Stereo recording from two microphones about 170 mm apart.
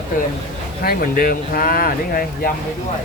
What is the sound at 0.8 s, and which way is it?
Speech, 60° left (ahead or behind).